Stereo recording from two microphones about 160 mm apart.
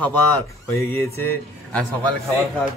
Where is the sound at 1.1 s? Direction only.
10° left (ahead or behind).